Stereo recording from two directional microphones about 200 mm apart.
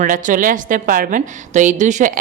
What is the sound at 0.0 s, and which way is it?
A woman's voice, 40° right (ahead or behind).